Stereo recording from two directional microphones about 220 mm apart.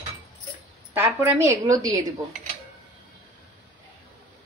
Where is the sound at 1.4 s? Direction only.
15° right (ahead or behind).